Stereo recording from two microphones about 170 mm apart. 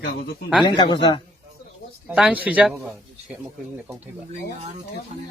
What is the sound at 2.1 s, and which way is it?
Speech, 5° right (ahead or behind).